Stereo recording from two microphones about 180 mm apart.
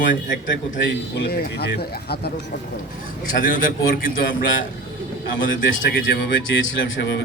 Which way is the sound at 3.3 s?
50° left (ahead or behind).